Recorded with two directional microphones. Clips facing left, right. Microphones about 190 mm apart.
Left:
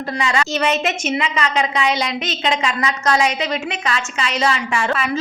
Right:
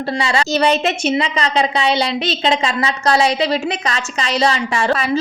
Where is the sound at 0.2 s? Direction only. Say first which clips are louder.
Right 2 dB; 30° right (ahead or behind).